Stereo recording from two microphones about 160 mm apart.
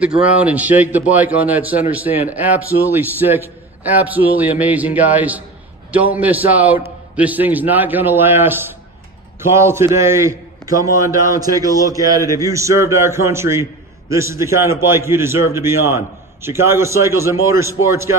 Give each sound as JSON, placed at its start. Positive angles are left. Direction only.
{"t": 0.2, "sound": "a man's voice", "side_deg": -10}